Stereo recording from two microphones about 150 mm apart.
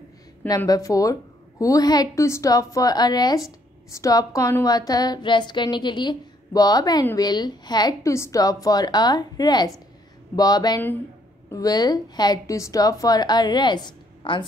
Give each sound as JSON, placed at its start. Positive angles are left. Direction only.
{"t": 0.7, "sound": "a woman's voice", "side_deg": 20}